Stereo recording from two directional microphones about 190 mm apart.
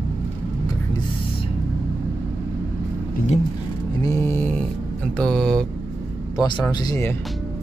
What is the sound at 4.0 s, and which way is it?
Mantra, 15° left (ahead or behind).